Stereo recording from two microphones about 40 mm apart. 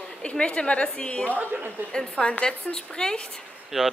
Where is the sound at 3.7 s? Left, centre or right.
Centre.